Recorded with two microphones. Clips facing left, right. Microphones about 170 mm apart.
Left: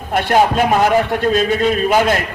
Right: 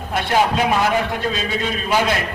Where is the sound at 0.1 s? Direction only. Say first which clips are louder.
Left 4 dB; 50° left (ahead or behind).